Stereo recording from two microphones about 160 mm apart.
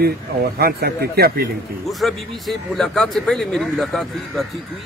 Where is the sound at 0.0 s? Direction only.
70° right (ahead or behind).